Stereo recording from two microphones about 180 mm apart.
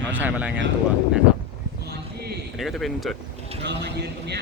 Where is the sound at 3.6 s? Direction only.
70° right (ahead or behind).